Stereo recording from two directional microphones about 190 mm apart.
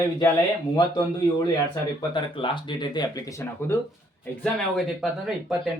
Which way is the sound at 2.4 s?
25° left (ahead or behind).